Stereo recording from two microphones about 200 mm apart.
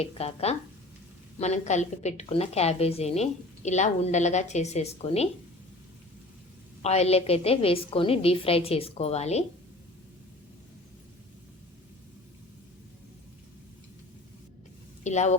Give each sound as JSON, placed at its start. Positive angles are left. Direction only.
{"t": 0.0, "sound": "a woman's voice", "side_deg": 30}
{"t": 6.8, "sound": "a woman's voice", "side_deg": 30}
{"t": 15.0, "sound": "a woman's voice", "side_deg": 35}